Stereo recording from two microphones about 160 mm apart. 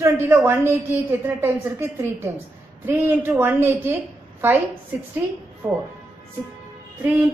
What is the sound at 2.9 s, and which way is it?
A woman's voice, 15° right (ahead or behind).